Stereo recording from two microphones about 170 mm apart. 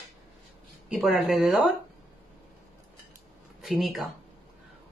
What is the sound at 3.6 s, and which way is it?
Speech, centre (ahead or behind).